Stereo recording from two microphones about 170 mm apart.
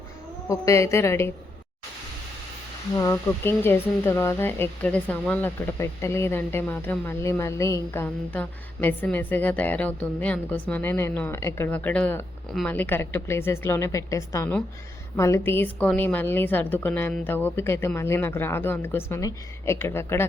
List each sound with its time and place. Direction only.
0.4 s speech: 20° left (ahead or behind)
3.0 s speech: 15° left (ahead or behind)